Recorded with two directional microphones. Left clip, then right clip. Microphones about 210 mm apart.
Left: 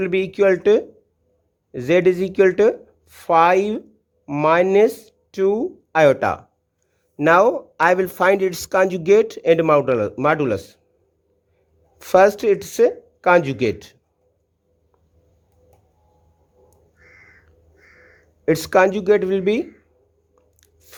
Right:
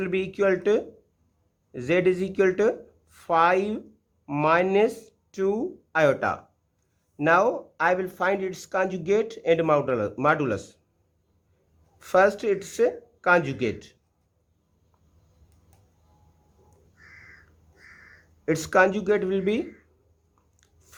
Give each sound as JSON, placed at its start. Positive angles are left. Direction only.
{"t": 0.0, "sound": "speech", "side_deg": 25}
{"t": 11.9, "sound": "speech", "side_deg": 30}
{"t": 18.4, "sound": "speech", "side_deg": 30}